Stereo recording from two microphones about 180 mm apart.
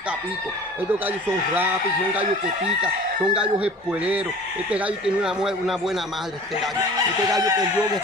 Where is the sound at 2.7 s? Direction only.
5° right (ahead or behind).